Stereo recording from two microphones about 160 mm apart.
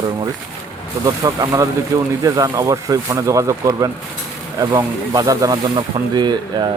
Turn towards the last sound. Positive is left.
turn(degrees=-25)  # may be behind; listen again after turning